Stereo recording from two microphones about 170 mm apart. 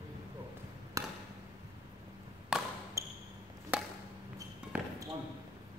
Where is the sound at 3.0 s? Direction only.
20° right (ahead or behind).